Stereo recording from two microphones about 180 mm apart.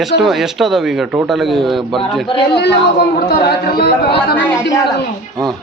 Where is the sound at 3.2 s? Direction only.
60° left (ahead or behind).